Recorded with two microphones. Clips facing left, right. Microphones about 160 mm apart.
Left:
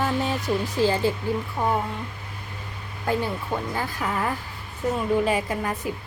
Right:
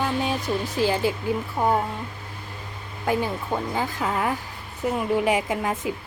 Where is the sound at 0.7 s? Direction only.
15° right (ahead or behind).